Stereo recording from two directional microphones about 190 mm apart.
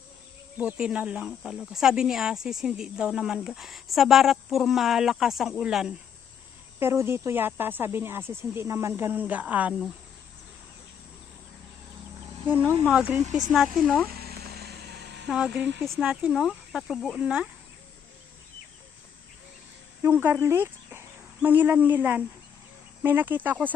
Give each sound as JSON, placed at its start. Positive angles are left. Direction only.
{"t": 0.6, "sound": "speech", "side_deg": -5}
{"t": 6.7, "sound": "speech", "side_deg": -10}
{"t": 12.8, "sound": "speech", "side_deg": -10}
{"t": 14.1, "sound": "a sound", "side_deg": -55}
{"t": 15.3, "sound": "speech", "side_deg": -5}
{"t": 20.0, "sound": "speech", "side_deg": -10}